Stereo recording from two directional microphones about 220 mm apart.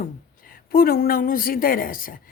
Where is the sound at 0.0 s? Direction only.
40° left (ahead or behind).